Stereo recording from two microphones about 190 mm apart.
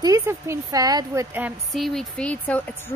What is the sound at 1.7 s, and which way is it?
Speech, centre (ahead or behind).